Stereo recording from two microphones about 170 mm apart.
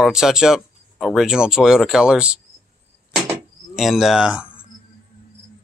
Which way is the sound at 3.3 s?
Centre (ahead or behind).